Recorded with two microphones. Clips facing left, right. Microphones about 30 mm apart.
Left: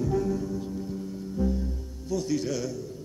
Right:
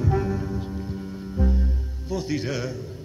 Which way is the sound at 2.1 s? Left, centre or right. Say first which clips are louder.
Right 1 dB; right.